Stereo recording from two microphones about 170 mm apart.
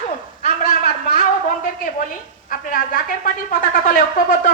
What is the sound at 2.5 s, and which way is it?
A woman's voice, 55° left (ahead or behind).